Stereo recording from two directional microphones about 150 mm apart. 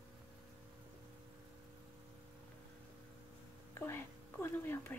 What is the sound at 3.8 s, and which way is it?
Speech, 15° left (ahead or behind).